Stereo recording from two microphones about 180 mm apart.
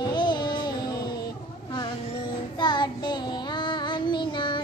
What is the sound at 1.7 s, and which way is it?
Child singing, 25° left (ahead or behind).